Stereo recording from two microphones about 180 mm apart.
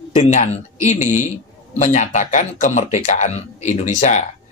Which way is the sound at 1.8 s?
45° left (ahead or behind).